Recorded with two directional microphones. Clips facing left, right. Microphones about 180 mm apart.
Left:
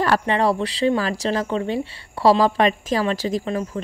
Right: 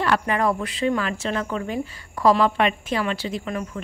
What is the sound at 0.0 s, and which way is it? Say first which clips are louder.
A woman's voice: left 2 dB; 35° left (ahead or behind).